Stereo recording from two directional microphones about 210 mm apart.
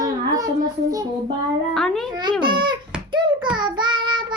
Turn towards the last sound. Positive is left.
turn(degrees=-20)  # may be behind; listen again after turning